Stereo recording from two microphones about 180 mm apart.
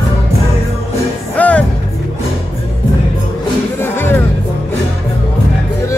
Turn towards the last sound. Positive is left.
turn(degrees=10)  # may be behind; listen again after turning